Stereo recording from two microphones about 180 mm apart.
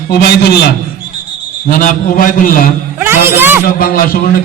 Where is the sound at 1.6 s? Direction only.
50° left (ahead or behind).